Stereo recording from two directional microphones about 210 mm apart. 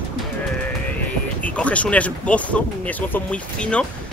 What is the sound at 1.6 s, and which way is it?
Speech, 5° left (ahead or behind).